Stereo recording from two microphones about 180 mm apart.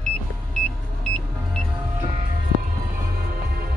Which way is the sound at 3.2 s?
55° right (ahead or behind).